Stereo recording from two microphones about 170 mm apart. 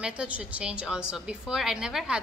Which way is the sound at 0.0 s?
5° right (ahead or behind).